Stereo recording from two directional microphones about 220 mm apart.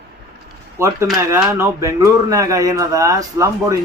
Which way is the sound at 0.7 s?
10° right (ahead or behind).